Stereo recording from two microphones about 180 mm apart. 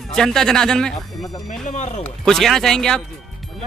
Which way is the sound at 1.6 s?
45° left (ahead or behind).